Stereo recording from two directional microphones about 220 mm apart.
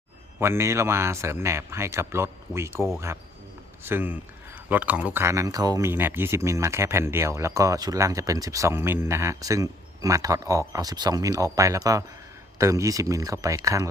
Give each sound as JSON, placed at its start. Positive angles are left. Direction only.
{"t": 0.3, "sound": "speech", "side_deg": -10}
{"t": 3.8, "sound": "speech", "side_deg": -10}